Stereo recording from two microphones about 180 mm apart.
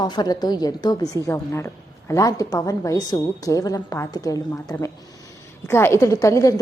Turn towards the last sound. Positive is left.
turn(degrees=15)  # may be behind; listen again after turning